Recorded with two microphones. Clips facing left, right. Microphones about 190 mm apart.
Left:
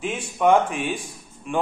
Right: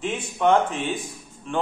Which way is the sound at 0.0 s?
10° left (ahead or behind).